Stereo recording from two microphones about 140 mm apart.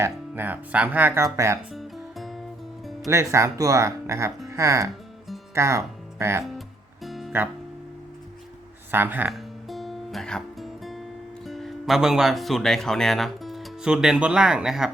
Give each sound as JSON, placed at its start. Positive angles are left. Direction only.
{"t": 0.0, "sound": "speech", "side_deg": -15}
{"t": 1.7, "sound": "music", "side_deg": 0}
{"t": 3.1, "sound": "speech", "side_deg": -20}
{"t": 7.0, "sound": "music", "side_deg": 0}
{"t": 8.9, "sound": "speech", "side_deg": -15}
{"t": 9.3, "sound": "music", "side_deg": 0}
{"t": 11.4, "sound": "speech", "side_deg": 0}